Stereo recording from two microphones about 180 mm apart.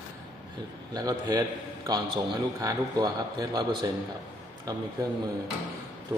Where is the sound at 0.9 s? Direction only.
20° right (ahead or behind).